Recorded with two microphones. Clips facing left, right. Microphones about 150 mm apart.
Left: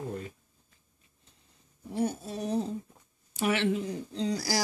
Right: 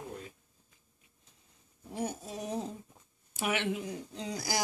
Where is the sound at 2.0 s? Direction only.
15° right (ahead or behind).